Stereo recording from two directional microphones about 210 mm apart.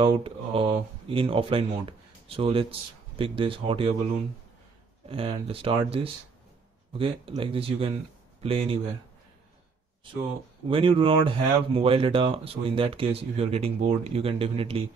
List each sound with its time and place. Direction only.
0.2 s speech: 25° right (ahead or behind)
5.0 s speech: 25° right (ahead or behind)
10.7 s speech: 25° right (ahead or behind)